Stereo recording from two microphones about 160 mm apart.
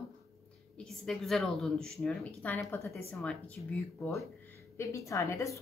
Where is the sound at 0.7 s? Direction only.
Centre (ahead or behind).